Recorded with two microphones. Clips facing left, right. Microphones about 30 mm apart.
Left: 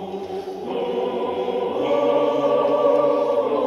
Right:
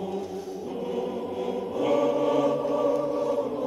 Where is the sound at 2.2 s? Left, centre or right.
Centre.